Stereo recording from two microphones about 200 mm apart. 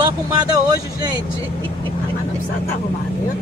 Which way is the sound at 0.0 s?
20° right (ahead or behind).